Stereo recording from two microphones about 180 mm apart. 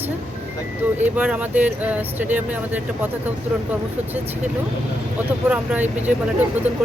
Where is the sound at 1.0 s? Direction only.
10° right (ahead or behind).